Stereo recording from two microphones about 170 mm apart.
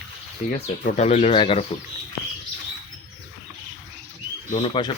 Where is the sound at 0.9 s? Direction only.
40° left (ahead or behind).